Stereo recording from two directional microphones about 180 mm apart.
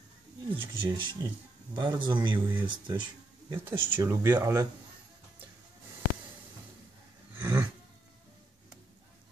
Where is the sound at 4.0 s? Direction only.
15° right (ahead or behind).